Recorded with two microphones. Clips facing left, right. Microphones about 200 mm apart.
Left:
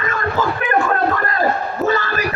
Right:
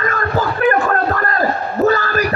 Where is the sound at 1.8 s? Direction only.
40° right (ahead or behind).